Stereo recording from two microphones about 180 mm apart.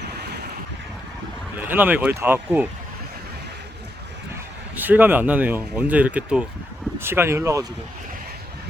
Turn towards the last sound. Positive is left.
turn(degrees=-15)  # may be behind; listen again after turning